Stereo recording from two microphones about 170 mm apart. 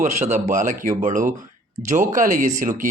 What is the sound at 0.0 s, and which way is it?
Speech, 45° right (ahead or behind).